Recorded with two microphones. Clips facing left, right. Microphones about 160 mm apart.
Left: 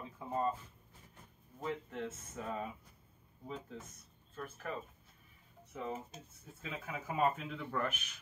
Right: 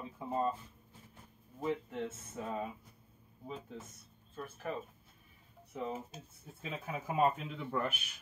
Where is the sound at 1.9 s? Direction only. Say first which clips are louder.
Right 2 dB; 20° right (ahead or behind).